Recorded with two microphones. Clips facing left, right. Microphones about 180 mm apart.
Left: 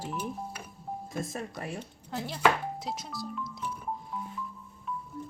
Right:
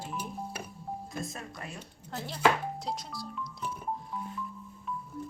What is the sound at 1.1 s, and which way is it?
Speech, 45° left (ahead or behind).